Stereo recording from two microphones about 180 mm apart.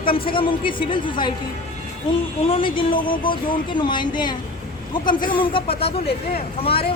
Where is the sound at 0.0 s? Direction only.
30° left (ahead or behind).